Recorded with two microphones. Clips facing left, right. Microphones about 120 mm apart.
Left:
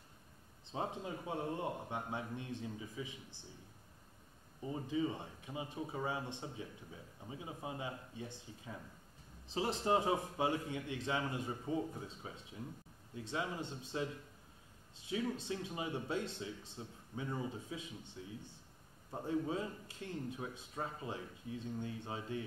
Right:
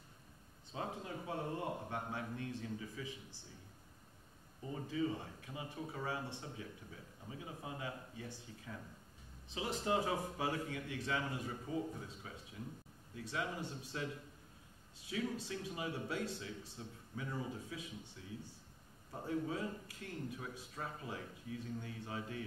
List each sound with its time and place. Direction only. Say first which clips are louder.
0.7 s speech: left 3 dB; 20° left (ahead or behind)
4.6 s speech: left 1 dB; 20° left (ahead or behind)
9.5 s speech: left 3 dB; 35° left (ahead or behind)
15.0 s speech: left 2 dB; 25° left (ahead or behind)